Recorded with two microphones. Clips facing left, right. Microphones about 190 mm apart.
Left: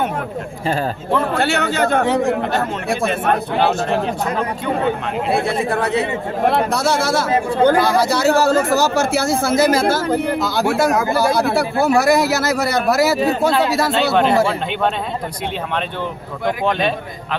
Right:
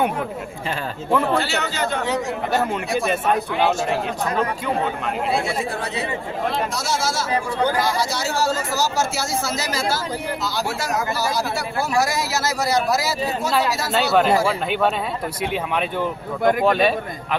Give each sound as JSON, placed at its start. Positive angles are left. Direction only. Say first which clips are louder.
{"t": 1.4, "sound": "speech", "louder": "left 6 dB", "side_deg": 55}
{"t": 5.3, "sound": "speech", "louder": "left 7 dB", "side_deg": 60}
{"t": 13.9, "sound": "speech", "louder": "even", "side_deg": -5}
{"t": 16.6, "sound": "speech", "louder": "left 1 dB", "side_deg": -5}